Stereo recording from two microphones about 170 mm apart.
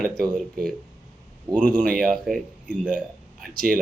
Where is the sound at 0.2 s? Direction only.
5° left (ahead or behind).